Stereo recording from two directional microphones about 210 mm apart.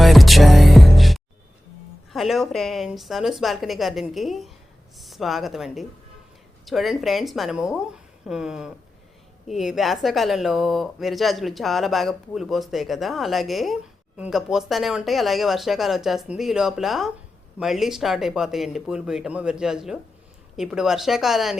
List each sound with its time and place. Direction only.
0.0 s music: centre (ahead or behind)
2.1 s speech: centre (ahead or behind)